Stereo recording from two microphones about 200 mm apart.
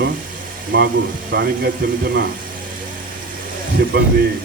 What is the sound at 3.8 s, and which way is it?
Speech, 50° right (ahead or behind).